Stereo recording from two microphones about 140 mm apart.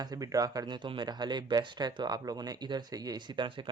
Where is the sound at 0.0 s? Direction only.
25° right (ahead or behind).